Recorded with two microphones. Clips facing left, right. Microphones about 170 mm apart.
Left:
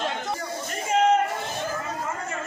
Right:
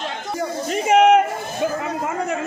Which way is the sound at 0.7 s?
80° right.